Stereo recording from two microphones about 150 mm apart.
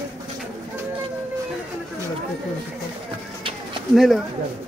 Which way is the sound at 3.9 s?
Centre (ahead or behind).